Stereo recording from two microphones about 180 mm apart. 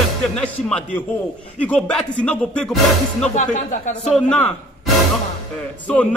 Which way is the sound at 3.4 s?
40° left (ahead or behind).